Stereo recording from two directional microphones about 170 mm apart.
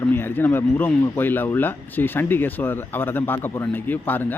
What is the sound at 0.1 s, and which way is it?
Speech, 10° left (ahead or behind).